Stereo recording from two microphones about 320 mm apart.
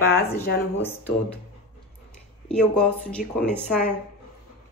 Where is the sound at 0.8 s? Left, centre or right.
Centre.